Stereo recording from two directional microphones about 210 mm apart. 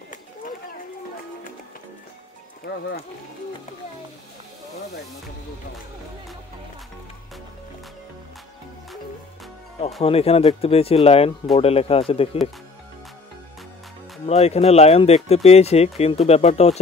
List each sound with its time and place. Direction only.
2.6 s music: 50° left (ahead or behind)
10.0 s speech: 30° left (ahead or behind)
14.2 s speech: 30° left (ahead or behind)